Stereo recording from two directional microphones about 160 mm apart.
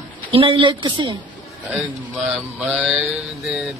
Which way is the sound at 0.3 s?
35° right (ahead or behind).